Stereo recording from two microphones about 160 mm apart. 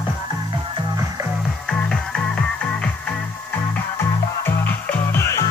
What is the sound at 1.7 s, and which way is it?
Music, 5° left (ahead or behind).